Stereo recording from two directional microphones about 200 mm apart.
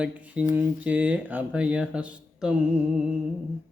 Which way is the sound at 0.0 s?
5° right (ahead or behind).